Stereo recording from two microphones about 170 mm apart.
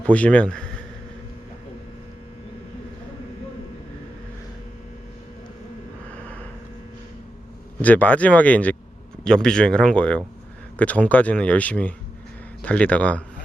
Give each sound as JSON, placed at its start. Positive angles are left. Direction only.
{"t": 0.0, "sound": "speech", "side_deg": 5}
{"t": 6.1, "sound": "a sound", "side_deg": 10}
{"t": 7.8, "sound": "speech", "side_deg": 10}